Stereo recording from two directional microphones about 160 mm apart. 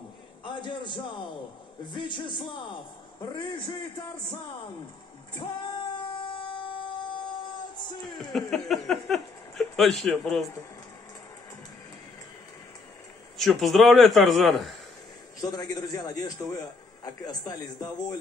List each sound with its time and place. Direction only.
0.4 s a man's voice: 30° left (ahead or behind)
5.4 s a man's voice: 30° left (ahead or behind)
6.2 s music: 30° left (ahead or behind)
8.2 s speech: centre (ahead or behind)
13.4 s a man's voice: centre (ahead or behind)
15.4 s a man's voice: 25° left (ahead or behind)